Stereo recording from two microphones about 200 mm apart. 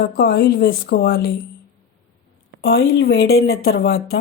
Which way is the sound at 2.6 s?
55° left (ahead or behind).